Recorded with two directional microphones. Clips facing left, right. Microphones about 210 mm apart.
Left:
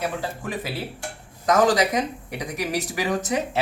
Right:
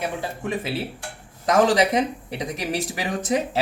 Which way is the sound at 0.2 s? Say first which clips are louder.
Right 2 dB; 25° right (ahead or behind).